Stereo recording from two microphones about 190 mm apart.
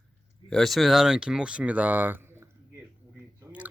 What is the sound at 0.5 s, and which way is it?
Speech, centre (ahead or behind).